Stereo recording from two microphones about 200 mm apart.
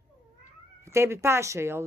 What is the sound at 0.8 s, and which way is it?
Speech, 15° right (ahead or behind).